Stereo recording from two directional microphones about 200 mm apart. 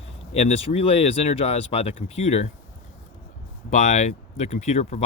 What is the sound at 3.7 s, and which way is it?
Speech, 35° left (ahead or behind).